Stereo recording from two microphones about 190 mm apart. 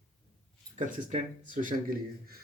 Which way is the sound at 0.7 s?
40° right (ahead or behind).